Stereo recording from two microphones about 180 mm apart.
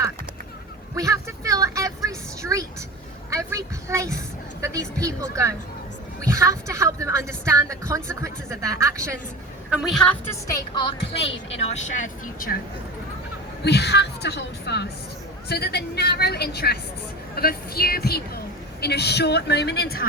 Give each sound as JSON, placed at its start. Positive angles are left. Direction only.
{"t": 0.9, "sound": "vehicle", "side_deg": -20}
{"t": 3.2, "sound": "a woman's voice", "side_deg": -15}
{"t": 9.6, "sound": "a woman's voice", "side_deg": 0}
{"t": 11.5, "sound": "speech", "side_deg": 40}
{"t": 13.7, "sound": "a woman's voice", "side_deg": 65}